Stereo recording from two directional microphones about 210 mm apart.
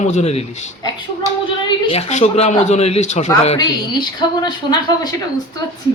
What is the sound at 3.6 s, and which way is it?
A man's voice, 20° left (ahead or behind).